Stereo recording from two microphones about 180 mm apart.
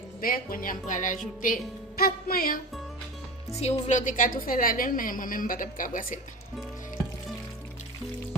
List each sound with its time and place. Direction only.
0.2 s a woman's voice: 50° left (ahead or behind)
3.5 s a woman's voice: 35° left (ahead or behind)